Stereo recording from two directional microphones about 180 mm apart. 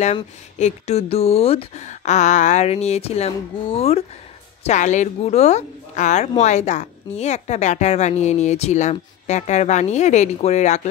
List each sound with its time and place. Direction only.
0.0 s speech: 40° left (ahead or behind)